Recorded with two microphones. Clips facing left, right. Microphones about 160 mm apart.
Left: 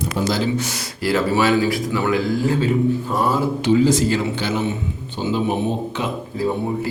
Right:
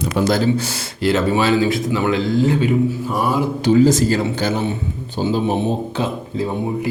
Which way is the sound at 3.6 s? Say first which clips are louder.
Right 3 dB; 45° right (ahead or behind).